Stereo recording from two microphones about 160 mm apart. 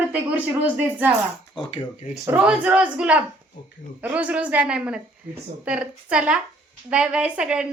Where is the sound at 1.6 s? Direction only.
40° left (ahead or behind).